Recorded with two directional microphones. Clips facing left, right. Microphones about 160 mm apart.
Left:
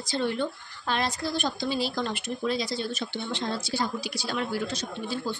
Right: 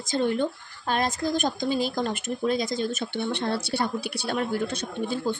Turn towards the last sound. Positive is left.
turn(degrees=-50)  # may be behind; listen again after turning